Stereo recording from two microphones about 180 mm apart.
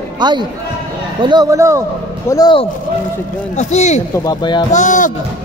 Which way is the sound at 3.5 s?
40° left (ahead or behind).